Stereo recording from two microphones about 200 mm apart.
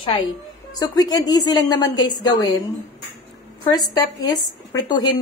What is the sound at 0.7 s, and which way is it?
A woman's voice, 20° left (ahead or behind).